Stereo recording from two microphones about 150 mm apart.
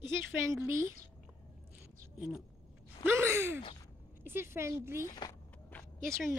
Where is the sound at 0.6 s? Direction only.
20° right (ahead or behind).